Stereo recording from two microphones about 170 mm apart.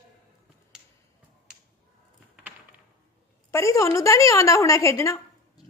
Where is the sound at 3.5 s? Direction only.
15° left (ahead or behind).